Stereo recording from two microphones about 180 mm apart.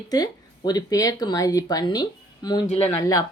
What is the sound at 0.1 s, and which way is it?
A woman's voice, 20° left (ahead or behind).